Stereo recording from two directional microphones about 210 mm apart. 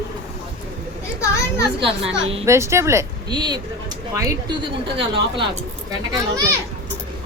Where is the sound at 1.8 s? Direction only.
25° right (ahead or behind).